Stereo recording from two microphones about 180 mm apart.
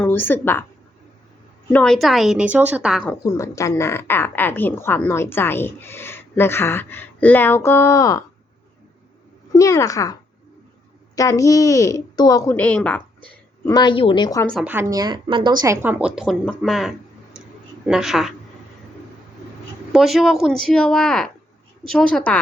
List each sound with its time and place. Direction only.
0.0 s a woman's voice: 10° left (ahead or behind)
1.7 s speech: 5° left (ahead or behind)
3.2 s a woman's voice: 15° left (ahead or behind)
9.6 s a woman's voice: 20° left (ahead or behind)
12.5 s a woman's voice: 10° left (ahead or behind)
13.7 s a woman's voice: 25° left (ahead or behind)
14.6 s speech: 10° right (ahead or behind); by 15.5 s 25° right (ahead or behind)
15.6 s speech: 15° right (ahead or behind)
19.9 s speech: centre (ahead or behind)